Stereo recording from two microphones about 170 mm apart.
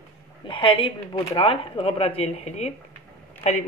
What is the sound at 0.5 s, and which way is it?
Speech, 30° left (ahead or behind).